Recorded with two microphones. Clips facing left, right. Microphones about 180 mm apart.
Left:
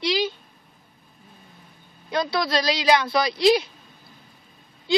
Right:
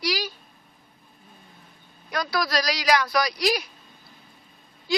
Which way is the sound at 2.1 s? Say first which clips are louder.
Left 3 dB; 25° left (ahead or behind).